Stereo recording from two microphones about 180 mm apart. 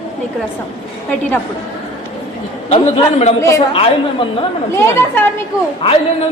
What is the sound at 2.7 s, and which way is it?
Speech, 35° left (ahead or behind).